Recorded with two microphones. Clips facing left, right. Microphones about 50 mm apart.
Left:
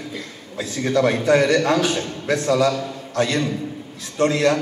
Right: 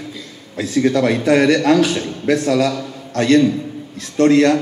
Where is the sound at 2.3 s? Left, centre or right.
Left.